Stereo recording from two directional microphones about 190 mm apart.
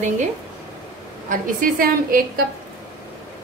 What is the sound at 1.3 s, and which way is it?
Speech, 45° right (ahead or behind).